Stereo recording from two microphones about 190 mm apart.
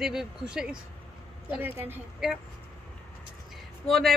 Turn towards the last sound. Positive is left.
turn(degrees=0)  # may be behind; listen again after turning